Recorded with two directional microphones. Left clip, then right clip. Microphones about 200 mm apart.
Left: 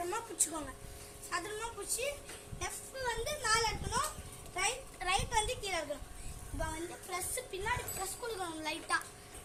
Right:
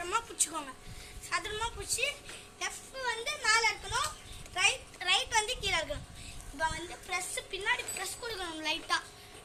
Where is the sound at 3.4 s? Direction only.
10° left (ahead or behind).